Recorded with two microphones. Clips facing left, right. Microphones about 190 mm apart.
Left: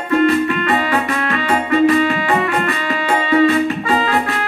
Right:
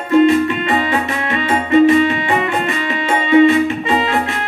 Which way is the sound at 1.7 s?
20° right (ahead or behind).